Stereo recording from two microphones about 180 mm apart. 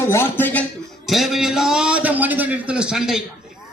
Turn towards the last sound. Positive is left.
turn(degrees=0)  # may be behind; listen again after turning